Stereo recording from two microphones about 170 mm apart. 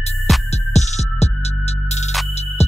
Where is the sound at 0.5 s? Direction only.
40° left (ahead or behind).